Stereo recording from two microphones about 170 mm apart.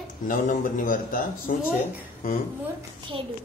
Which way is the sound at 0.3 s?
50° left (ahead or behind).